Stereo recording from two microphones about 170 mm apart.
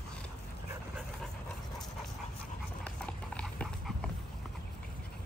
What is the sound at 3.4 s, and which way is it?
Dog, 5° left (ahead or behind).